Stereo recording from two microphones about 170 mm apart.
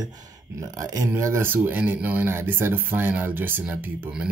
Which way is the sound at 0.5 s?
20° right (ahead or behind).